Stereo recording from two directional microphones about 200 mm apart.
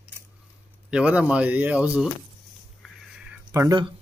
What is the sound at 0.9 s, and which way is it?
Speech, 5° right (ahead or behind).